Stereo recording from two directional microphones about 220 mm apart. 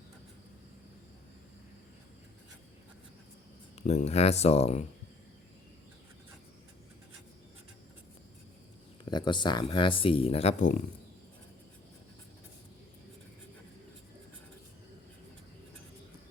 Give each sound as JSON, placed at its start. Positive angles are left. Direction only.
{"t": 3.8, "sound": "speech", "side_deg": 30}
{"t": 9.0, "sound": "speech", "side_deg": 20}